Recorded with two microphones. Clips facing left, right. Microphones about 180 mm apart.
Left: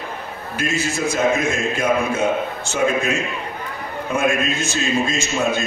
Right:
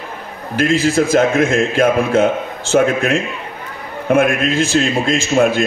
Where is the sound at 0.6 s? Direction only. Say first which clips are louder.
Right 9 dB; 90° right.